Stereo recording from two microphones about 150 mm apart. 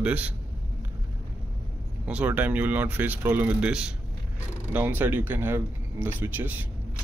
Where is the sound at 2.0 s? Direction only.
10° right (ahead or behind).